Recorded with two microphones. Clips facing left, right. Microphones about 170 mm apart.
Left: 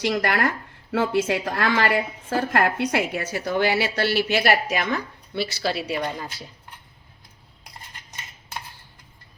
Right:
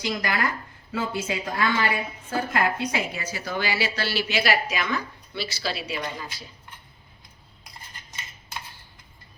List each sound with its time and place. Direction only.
0.0 s speech: 65° left (ahead or behind)
5.8 s speech: 40° left (ahead or behind)